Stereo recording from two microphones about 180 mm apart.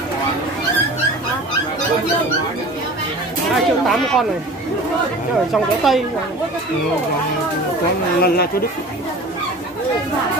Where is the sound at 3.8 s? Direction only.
Centre (ahead or behind).